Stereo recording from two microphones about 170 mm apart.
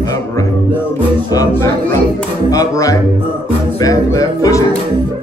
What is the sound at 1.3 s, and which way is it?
A man's voice, 20° left (ahead or behind).